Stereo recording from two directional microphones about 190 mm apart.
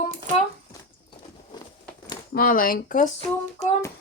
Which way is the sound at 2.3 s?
50° left (ahead or behind).